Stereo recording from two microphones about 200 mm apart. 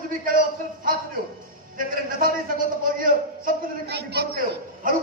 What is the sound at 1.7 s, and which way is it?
A man's voice, 45° right (ahead or behind).